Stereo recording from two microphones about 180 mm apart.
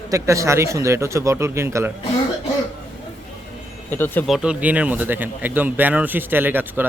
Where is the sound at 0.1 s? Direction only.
15° right (ahead or behind).